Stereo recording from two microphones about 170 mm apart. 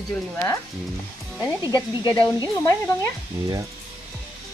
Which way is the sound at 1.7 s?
25° left (ahead or behind).